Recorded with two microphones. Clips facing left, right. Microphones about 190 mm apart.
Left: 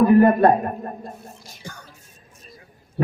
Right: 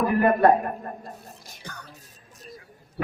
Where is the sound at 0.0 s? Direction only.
25° left (ahead or behind).